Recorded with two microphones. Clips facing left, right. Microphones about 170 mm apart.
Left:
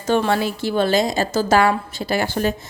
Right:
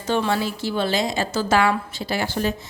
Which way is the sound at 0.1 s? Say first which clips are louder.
Left 3 dB; 55° left (ahead or behind).